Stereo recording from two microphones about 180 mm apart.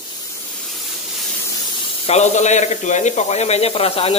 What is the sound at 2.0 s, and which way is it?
Speech, 40° left (ahead or behind).